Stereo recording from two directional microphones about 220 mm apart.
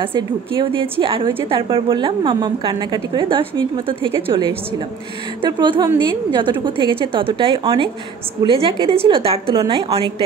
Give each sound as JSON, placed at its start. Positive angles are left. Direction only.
{"t": 0.6, "sound": "a woman's voice", "side_deg": -25}